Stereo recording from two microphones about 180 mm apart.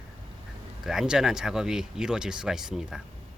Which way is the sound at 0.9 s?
5° right (ahead or behind).